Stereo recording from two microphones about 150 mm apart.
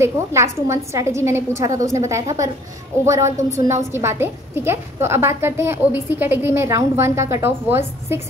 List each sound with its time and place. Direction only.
0.0 s a woman's voice: 20° right (ahead or behind)